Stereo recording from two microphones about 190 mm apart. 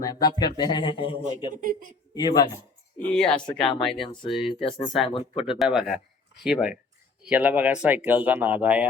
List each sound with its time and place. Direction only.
0.0 s speech: 20° left (ahead or behind)
2.1 s speech: 20° left (ahead or behind)
3.0 s speech: 5° left (ahead or behind)
3.4 s speech: 25° left (ahead or behind)
3.8 s speech: centre (ahead or behind)
4.6 s speech: 25° left (ahead or behind)
5.5 s speech: centre (ahead or behind)